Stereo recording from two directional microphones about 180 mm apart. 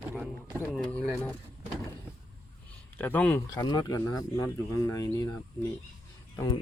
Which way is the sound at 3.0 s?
10° left (ahead or behind).